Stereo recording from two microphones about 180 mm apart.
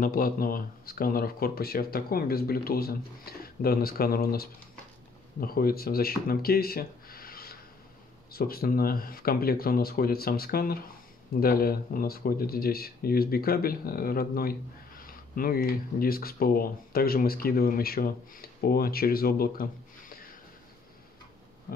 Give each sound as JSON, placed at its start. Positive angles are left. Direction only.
{"t": 0.0, "sound": "speech", "side_deg": 50}